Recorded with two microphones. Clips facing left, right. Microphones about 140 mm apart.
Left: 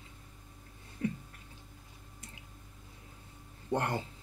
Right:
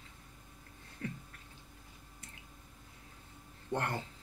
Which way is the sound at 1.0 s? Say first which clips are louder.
Left 7 dB; 15° left (ahead or behind).